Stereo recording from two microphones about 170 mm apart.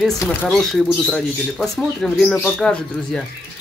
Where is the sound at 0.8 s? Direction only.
5° left (ahead or behind).